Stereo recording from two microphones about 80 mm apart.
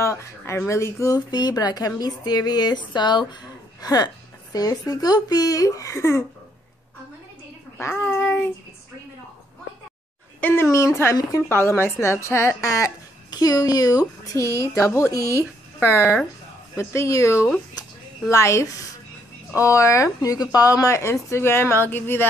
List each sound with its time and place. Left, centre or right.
0.0 s speech: left
1.3 s a woman's voice: left
3.8 s speech: left
7.7 s a sound: left
10.4 s speech: left
13.3 s speech: left